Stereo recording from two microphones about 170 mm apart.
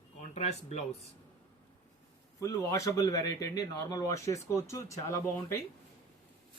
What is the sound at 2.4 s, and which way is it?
Speech, 20° left (ahead or behind).